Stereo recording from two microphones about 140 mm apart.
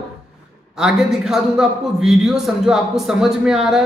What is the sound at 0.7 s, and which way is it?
A man's voice, centre (ahead or behind).